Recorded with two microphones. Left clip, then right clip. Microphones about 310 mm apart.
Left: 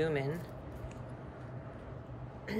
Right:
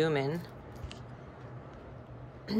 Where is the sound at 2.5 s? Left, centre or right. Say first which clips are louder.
Right 4 dB; centre.